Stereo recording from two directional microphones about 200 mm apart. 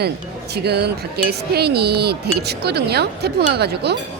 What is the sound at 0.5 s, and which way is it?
Speech, 55° right (ahead or behind).